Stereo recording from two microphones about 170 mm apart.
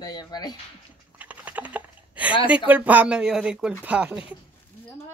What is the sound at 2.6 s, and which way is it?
A woman's voice, 10° right (ahead or behind).